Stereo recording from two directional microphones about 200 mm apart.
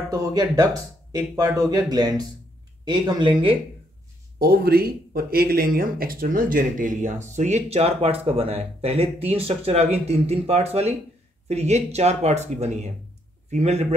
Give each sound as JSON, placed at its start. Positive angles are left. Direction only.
{"t": 0.1, "sound": "speech", "side_deg": -20}
{"t": 4.4, "sound": "speech", "side_deg": -50}